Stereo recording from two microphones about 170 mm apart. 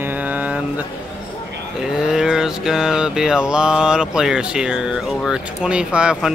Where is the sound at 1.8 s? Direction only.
5° right (ahead or behind).